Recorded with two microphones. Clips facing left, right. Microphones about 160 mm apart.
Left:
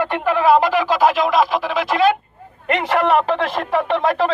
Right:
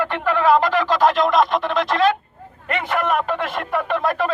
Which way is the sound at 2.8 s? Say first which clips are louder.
Left 4 dB; 80° left.